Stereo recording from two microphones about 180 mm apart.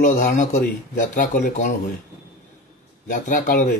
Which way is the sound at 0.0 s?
50° left (ahead or behind).